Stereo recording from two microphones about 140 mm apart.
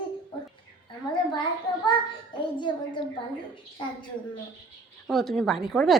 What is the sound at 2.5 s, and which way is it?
Speech, 35° left (ahead or behind).